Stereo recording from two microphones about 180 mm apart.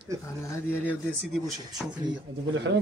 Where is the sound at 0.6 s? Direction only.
10° left (ahead or behind).